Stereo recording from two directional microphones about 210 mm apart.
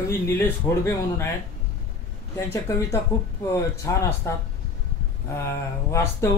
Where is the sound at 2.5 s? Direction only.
15° left (ahead or behind).